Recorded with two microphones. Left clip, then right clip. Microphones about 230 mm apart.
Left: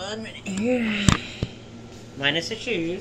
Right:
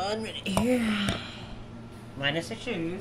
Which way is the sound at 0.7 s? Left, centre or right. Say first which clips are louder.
Left 8 dB; right.